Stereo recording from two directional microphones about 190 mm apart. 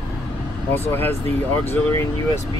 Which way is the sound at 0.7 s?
10° left (ahead or behind).